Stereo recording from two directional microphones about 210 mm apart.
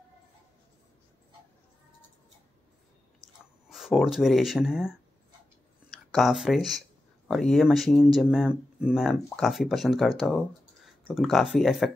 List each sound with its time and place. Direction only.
3.7 s speech: centre (ahead or behind)